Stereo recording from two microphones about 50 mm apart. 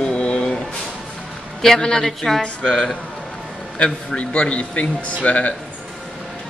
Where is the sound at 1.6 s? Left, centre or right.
Centre.